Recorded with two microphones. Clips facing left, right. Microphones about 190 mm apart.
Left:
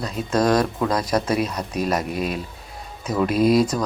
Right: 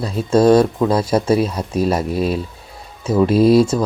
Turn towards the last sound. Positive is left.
turn(degrees=-30)  # may be behind; listen again after turning